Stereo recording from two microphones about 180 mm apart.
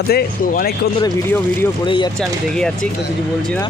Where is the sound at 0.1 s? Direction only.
60° left (ahead or behind).